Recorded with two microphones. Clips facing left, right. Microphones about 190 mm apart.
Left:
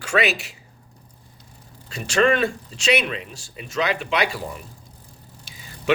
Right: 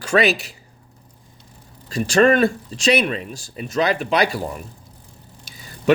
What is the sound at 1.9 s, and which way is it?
Speech, 40° right (ahead or behind).